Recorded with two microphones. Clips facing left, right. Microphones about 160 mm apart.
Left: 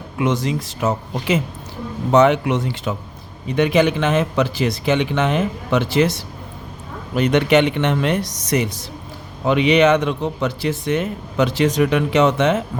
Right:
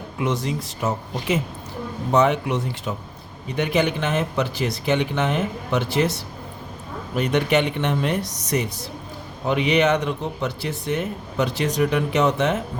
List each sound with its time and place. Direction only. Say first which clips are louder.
0.2 s speech: left 4 dB; 90° left
7.2 s speech: left 5 dB; 90° left